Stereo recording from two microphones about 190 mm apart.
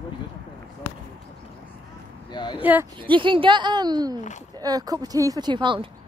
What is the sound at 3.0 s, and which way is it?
Speech, 25° right (ahead or behind).